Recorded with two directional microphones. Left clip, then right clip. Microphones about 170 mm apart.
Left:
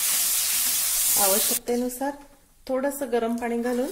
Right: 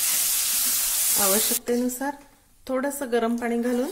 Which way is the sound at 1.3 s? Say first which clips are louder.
Right 1 dB; 20° right (ahead or behind).